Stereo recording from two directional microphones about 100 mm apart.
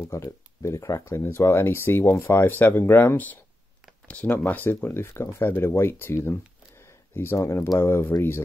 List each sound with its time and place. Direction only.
0.0 s speech: 30° left (ahead or behind)